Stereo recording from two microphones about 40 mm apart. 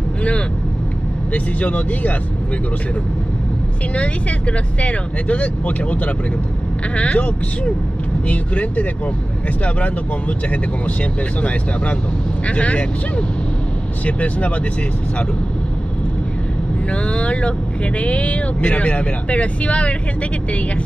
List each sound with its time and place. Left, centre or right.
1.3 s speech: left
3.9 s speech: left
16.9 s speech: left